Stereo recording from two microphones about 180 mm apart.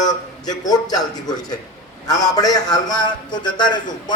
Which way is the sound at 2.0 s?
20° left (ahead or behind).